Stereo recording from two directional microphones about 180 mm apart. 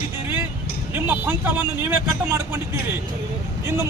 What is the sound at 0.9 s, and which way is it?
Speech, 10° right (ahead or behind).